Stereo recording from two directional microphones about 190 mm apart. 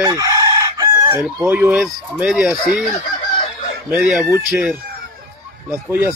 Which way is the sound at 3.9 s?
5° right (ahead or behind).